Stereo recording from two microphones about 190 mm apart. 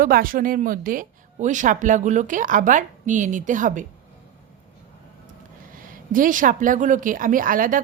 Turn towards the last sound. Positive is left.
turn(degrees=-45)  # may be behind; listen again after turning